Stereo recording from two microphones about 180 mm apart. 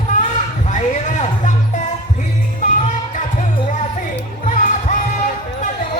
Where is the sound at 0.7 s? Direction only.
45° left (ahead or behind).